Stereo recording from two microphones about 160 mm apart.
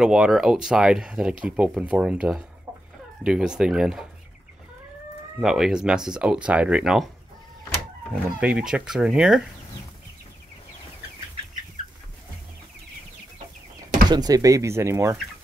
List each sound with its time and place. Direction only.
0.0 s speech: 5° right (ahead or behind)
5.4 s speech: 5° right (ahead or behind)
8.1 s speech: 5° right (ahead or behind)
14.0 s speech: 25° right (ahead or behind)